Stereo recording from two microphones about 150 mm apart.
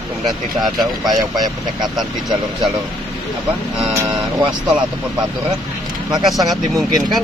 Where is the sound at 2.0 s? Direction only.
Centre (ahead or behind).